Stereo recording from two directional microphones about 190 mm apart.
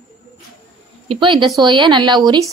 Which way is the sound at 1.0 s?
25° right (ahead or behind).